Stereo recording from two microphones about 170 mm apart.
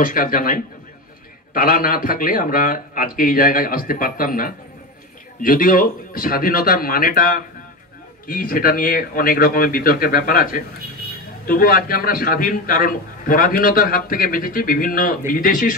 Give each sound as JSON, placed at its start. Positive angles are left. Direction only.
{"t": 0.0, "sound": "a man's voice", "side_deg": 55}